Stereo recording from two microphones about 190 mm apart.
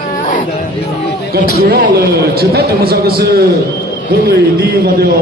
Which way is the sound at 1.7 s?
55° right (ahead or behind).